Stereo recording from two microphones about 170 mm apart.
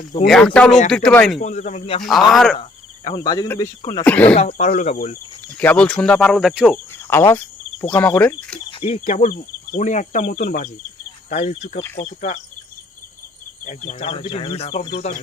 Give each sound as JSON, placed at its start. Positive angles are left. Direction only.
{"t": 0.3, "sound": "speech", "side_deg": 5}
{"t": 1.4, "sound": "speech", "side_deg": 45}
{"t": 2.3, "sound": "speech", "side_deg": 0}
{"t": 2.6, "sound": "cricket", "side_deg": 25}
{"t": 4.0, "sound": "speech", "side_deg": 10}
{"t": 4.4, "sound": "speech", "side_deg": 40}
{"t": 5.5, "sound": "speech", "side_deg": 5}
{"t": 6.7, "sound": "speech", "side_deg": 15}
{"t": 8.8, "sound": "speech", "side_deg": 40}
{"t": 13.7, "sound": "speech", "side_deg": 40}